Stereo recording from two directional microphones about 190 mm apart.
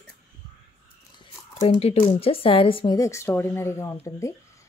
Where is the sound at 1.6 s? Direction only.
30° left (ahead or behind).